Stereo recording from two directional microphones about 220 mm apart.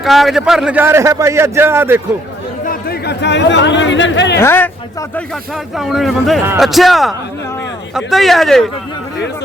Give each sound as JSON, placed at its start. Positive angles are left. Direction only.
{"t": 0.0, "sound": "a man's voice", "side_deg": 0}
{"t": 2.6, "sound": "speech", "side_deg": 45}
{"t": 4.4, "sound": "speech", "side_deg": 10}